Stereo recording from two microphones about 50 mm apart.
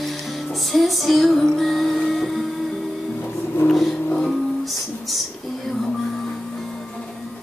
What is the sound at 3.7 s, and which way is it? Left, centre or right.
Music, centre.